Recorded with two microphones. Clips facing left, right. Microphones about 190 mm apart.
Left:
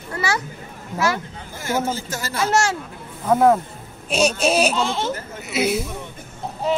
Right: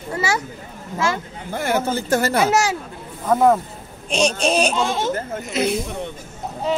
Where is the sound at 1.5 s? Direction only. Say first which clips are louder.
Right 3 dB; 60° right (ahead or behind).